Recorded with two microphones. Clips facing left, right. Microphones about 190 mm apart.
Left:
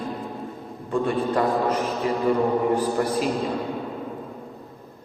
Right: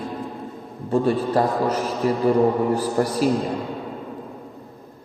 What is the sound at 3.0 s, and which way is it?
Speech, 40° right (ahead or behind).